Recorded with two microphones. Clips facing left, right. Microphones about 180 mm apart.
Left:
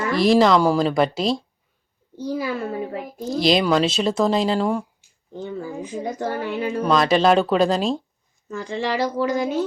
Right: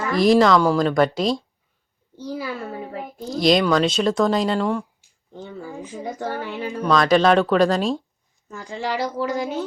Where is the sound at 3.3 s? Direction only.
Centre (ahead or behind).